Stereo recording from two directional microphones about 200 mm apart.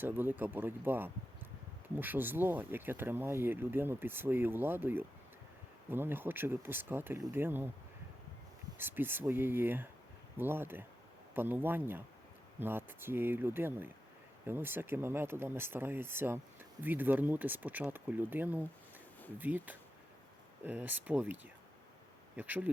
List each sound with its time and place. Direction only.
0.0 s speech: 10° right (ahead or behind)
8.8 s speech: 10° right (ahead or behind)
22.4 s speech: 10° right (ahead or behind)